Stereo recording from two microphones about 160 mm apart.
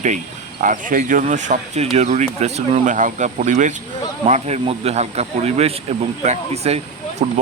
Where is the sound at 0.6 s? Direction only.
55° right (ahead or behind).